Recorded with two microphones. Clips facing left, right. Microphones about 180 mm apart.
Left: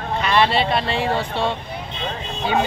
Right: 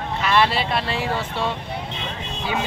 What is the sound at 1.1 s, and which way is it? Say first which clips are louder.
Speech: left 3 dB; 30° left (ahead or behind).